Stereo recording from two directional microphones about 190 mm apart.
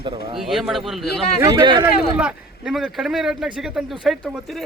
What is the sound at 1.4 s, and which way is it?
Speech, 20° right (ahead or behind).